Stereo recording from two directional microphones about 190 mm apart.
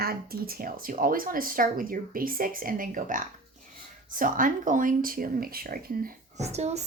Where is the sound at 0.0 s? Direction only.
55° right (ahead or behind).